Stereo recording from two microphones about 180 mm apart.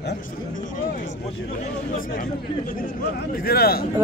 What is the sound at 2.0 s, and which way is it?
Speech, 50° left (ahead or behind).